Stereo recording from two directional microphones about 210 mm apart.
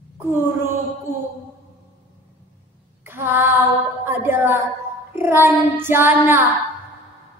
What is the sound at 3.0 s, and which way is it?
Female singing, 10° right (ahead or behind).